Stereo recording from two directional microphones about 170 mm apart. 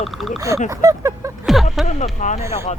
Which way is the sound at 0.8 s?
15° right (ahead or behind).